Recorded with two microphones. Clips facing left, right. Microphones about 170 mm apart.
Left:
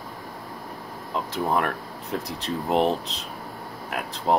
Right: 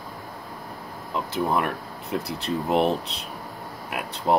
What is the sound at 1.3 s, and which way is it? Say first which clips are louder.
Speech: even; centre (ahead or behind).